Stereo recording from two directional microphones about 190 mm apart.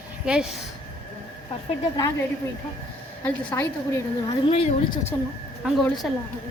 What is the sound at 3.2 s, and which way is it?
A woman's voice, 10° left (ahead or behind).